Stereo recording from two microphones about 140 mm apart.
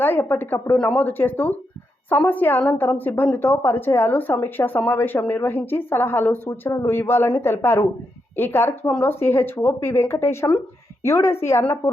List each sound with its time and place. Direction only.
0.0 s a woman's voice: 15° left (ahead or behind)